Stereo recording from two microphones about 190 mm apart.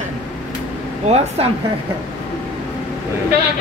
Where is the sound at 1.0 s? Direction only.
35° right (ahead or behind).